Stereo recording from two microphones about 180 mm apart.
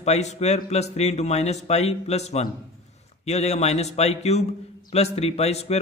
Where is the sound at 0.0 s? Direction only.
40° left (ahead or behind).